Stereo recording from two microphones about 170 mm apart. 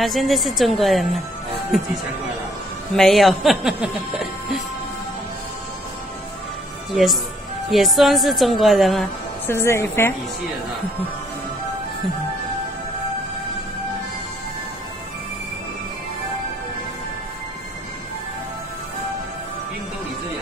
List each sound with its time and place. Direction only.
0.0 s speech: centre (ahead or behind)
3.0 s speech: centre (ahead or behind)
6.9 s speech: centre (ahead or behind)
9.5 s a woman's voice: 15° left (ahead or behind)